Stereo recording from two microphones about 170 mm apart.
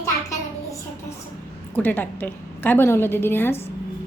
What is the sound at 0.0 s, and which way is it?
Child singing, 20° left (ahead or behind).